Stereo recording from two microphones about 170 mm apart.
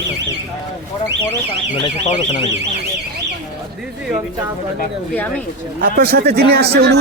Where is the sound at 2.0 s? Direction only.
35° left (ahead or behind).